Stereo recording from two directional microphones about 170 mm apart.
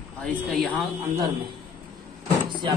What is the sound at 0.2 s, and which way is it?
Speech, 5° left (ahead or behind).